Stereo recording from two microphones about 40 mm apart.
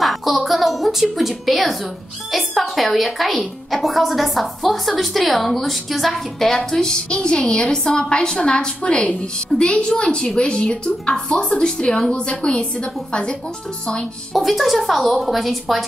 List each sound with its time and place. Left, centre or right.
0.0 s a sound: centre
1.1 s a woman's voice: centre; by 12.6 s left
14.3 s a woman's voice: centre